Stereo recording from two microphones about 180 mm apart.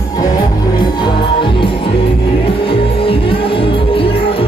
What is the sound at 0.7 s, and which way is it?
Music, 25° left (ahead or behind).